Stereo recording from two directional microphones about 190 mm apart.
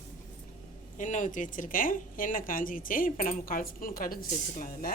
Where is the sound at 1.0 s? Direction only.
40° left (ahead or behind).